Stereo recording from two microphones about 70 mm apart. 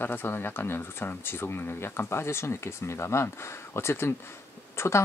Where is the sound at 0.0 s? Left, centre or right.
Left.